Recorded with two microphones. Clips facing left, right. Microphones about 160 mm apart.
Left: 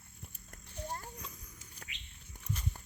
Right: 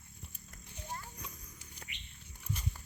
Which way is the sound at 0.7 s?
45° left (ahead or behind).